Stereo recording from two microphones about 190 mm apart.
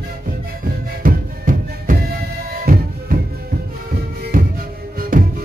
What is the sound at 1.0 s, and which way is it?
Music, 45° right (ahead or behind).